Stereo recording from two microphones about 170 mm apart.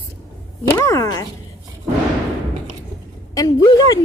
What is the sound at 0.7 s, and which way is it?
Speech, 15° left (ahead or behind).